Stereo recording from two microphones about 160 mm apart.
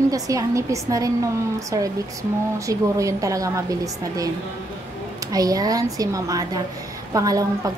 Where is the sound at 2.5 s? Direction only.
20° right (ahead or behind).